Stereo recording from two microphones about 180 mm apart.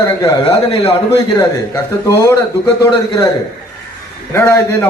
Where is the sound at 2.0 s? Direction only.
15° left (ahead or behind).